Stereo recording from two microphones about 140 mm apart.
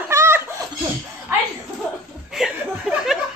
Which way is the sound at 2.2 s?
5° right (ahead or behind).